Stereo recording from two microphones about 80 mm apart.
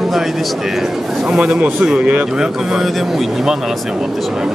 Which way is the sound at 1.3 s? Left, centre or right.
Centre.